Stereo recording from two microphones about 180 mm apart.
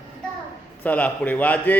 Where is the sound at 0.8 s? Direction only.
10° left (ahead or behind).